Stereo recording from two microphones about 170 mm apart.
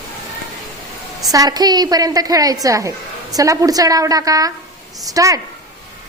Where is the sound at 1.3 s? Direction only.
20° right (ahead or behind).